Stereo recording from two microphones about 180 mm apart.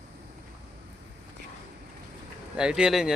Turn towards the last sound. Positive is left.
turn(degrees=-5)  # may be behind; listen again after turning